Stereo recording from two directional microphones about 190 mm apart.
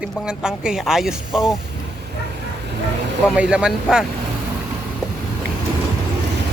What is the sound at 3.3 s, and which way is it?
Speech, 5° right (ahead or behind).